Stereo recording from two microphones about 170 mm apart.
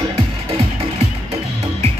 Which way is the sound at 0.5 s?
35° right (ahead or behind).